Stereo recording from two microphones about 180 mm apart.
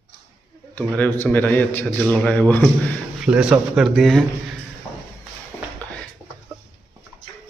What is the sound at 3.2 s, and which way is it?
Speech, 5° right (ahead or behind).